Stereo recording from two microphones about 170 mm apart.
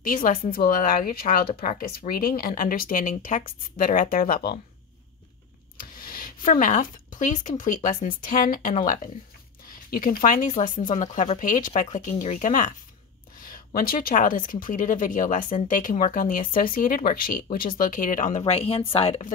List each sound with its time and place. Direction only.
0.0 s speech: 50° left (ahead or behind)
5.8 s speech: 60° left (ahead or behind)
18.4 s speech: 35° left (ahead or behind)